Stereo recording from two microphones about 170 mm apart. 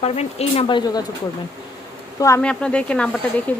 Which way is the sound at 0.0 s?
40° left (ahead or behind).